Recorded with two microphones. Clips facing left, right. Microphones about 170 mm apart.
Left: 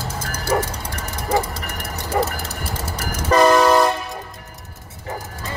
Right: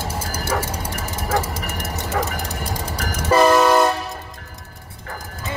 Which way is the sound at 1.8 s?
Centre (ahead or behind).